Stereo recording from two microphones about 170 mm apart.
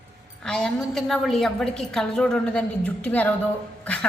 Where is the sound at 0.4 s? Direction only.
5° left (ahead or behind).